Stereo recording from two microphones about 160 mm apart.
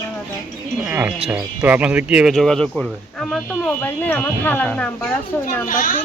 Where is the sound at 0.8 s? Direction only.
10° right (ahead or behind); by 5.0 s 5° left (ahead or behind).